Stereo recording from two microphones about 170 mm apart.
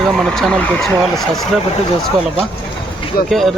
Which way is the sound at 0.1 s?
Centre (ahead or behind).